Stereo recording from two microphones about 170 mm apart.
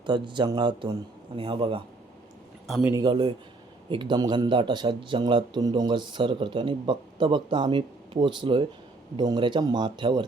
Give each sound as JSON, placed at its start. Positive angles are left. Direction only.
{"t": 0.0, "sound": "a man's voice", "side_deg": -25}
{"t": 2.8, "sound": "a man's voice", "side_deg": -20}